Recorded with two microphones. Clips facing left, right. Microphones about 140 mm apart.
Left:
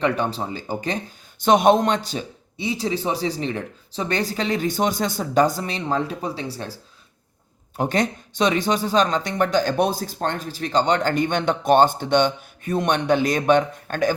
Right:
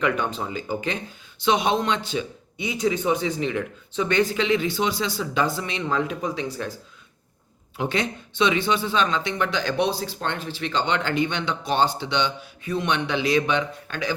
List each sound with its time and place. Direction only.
0.0 s speech: 35° left (ahead or behind)
7.8 s speech: 45° left (ahead or behind)